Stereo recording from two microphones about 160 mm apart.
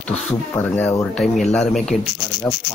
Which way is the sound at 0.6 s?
10° left (ahead or behind).